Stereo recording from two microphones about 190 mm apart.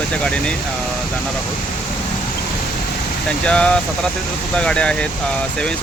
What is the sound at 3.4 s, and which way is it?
Speech, 5° left (ahead or behind).